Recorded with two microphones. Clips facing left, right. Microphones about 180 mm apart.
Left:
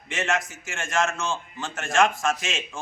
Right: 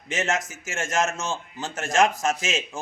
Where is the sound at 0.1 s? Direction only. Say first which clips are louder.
Right 1 dB; 40° right (ahead or behind).